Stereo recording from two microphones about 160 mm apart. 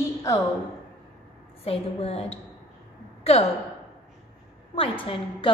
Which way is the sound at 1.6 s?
40° left (ahead or behind).